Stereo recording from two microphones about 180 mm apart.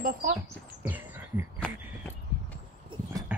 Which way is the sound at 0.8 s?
10° right (ahead or behind).